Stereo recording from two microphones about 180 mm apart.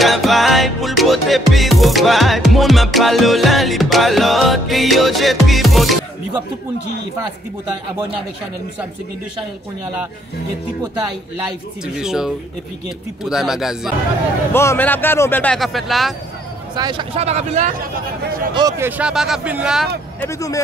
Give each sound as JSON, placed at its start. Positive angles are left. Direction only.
{"t": 0.0, "sound": "music", "side_deg": 0}
{"t": 11.9, "sound": "music", "side_deg": -5}
{"t": 14.5, "sound": "speech", "side_deg": 15}
{"t": 16.7, "sound": "speech", "side_deg": -25}
{"t": 18.5, "sound": "speech", "side_deg": -20}
{"t": 18.9, "sound": "music", "side_deg": -5}
{"t": 20.2, "sound": "speech", "side_deg": 15}